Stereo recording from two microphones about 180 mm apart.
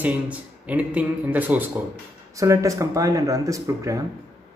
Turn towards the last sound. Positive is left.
turn(degrees=-20)  # may be behind; listen again after turning